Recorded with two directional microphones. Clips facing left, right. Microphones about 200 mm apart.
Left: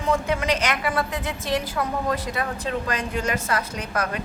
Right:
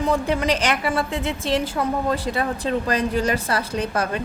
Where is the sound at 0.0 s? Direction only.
35° right (ahead or behind).